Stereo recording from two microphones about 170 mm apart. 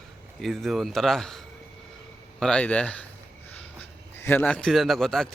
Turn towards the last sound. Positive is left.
turn(degrees=0)  # may be behind; listen again after turning